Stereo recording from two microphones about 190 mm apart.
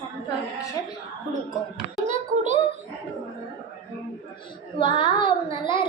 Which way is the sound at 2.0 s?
40° right (ahead or behind).